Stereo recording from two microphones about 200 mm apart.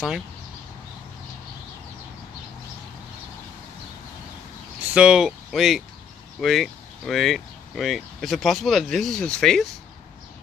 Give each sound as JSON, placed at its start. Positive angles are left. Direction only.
{"t": 4.9, "sound": "speech", "side_deg": -5}